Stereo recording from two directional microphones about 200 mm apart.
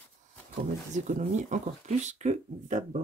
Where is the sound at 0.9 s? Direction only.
35° right (ahead or behind).